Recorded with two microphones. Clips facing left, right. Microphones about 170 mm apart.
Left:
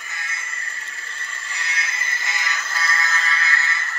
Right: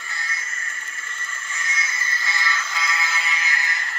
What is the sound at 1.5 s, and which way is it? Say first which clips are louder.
Music: even; 65° left (ahead or behind).